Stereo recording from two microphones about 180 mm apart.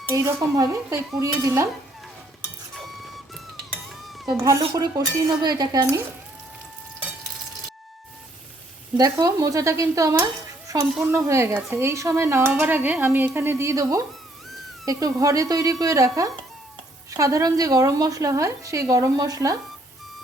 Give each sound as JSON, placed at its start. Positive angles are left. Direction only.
{"t": 0.1, "sound": "speech", "side_deg": -15}
{"t": 4.3, "sound": "a woman's voice", "side_deg": -15}
{"t": 9.0, "sound": "a woman's voice", "side_deg": -20}